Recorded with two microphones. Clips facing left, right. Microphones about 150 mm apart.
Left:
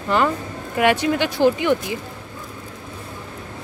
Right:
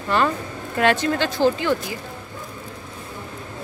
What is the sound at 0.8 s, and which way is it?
Speech, 15° left (ahead or behind).